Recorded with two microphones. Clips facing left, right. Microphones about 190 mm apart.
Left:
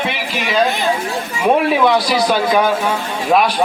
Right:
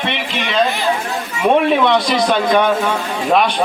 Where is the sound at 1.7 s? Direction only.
5° left (ahead or behind).